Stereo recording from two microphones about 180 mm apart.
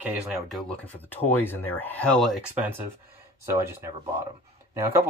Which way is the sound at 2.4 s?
10° right (ahead or behind).